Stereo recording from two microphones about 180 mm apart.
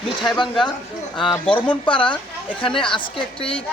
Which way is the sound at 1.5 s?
25° left (ahead or behind).